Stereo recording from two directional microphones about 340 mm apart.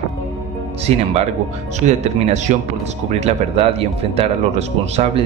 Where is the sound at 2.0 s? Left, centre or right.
Centre.